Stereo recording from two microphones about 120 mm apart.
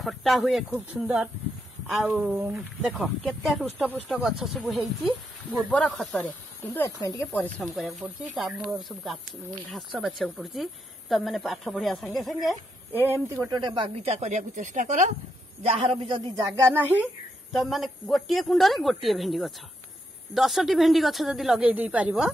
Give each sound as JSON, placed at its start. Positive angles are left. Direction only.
{"t": 0.0, "sound": "a woman's voice", "side_deg": 0}
{"t": 7.0, "sound": "speech", "side_deg": 30}
{"t": 7.3, "sound": "speech", "side_deg": 15}
{"t": 7.6, "sound": "a woman's voice", "side_deg": 0}
{"t": 12.9, "sound": "speech", "side_deg": -20}
{"t": 13.5, "sound": "speech", "side_deg": -35}
{"t": 14.0, "sound": "speech", "side_deg": -65}
{"t": 16.3, "sound": "speech", "side_deg": -25}
{"t": 17.5, "sound": "a woman's voice", "side_deg": 0}